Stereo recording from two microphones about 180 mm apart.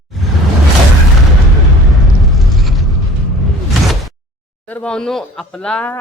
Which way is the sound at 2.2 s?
Centre (ahead or behind).